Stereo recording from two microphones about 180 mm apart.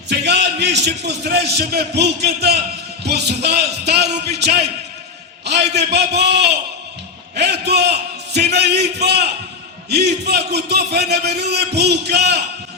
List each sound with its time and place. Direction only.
0.1 s a man's voice: 70° right (ahead or behind)